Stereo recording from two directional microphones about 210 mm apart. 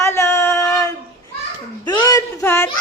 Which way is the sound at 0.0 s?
15° left (ahead or behind).